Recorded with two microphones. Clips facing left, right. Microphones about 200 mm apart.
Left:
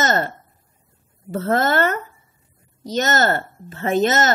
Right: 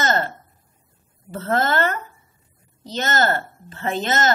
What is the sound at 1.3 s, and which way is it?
Speech, 45° left (ahead or behind).